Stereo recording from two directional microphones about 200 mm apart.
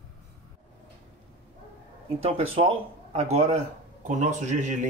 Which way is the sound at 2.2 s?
30° right (ahead or behind).